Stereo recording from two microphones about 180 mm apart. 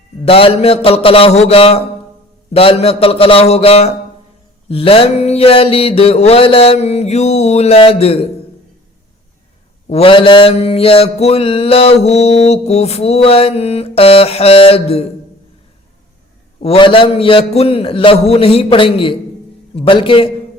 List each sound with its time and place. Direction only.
0.3 s mantra: 30° left (ahead or behind)
9.8 s mantra: 35° left (ahead or behind)
16.6 s mantra: 30° left (ahead or behind)
19.7 s a man's voice: 30° left (ahead or behind)